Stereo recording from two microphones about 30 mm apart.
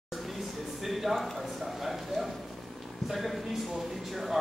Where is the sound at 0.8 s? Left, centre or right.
Centre.